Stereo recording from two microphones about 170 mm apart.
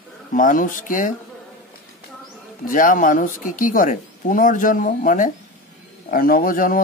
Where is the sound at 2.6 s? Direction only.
50° left (ahead or behind).